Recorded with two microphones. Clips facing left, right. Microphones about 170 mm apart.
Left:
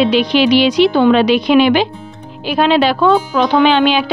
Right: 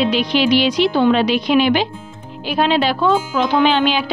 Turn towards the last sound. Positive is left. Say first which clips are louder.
# left 4 dB
turn(degrees=70)  # may be behind; listen again after turning